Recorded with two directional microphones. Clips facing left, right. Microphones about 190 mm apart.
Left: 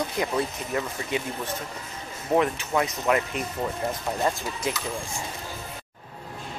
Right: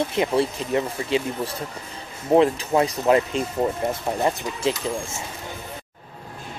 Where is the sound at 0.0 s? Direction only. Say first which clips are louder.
Right 5 dB; 25° right (ahead or behind).